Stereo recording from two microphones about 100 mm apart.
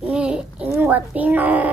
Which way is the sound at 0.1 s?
10° right (ahead or behind).